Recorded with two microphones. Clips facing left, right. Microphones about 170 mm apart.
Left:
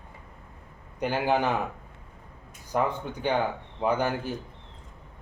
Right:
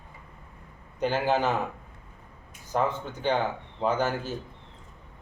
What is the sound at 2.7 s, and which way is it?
A man's voice, 10° left (ahead or behind).